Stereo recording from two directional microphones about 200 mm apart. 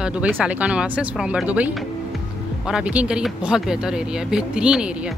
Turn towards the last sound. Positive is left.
turn(degrees=-5)  # may be behind; listen again after turning